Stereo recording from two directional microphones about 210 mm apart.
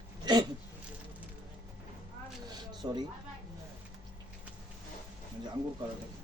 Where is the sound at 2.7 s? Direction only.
20° right (ahead or behind).